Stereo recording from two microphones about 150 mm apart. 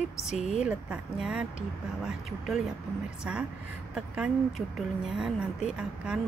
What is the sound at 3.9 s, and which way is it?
A woman's voice, 5° right (ahead or behind).